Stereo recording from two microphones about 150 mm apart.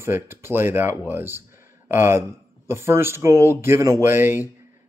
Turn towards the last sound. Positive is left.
turn(degrees=-15)  # may be behind; listen again after turning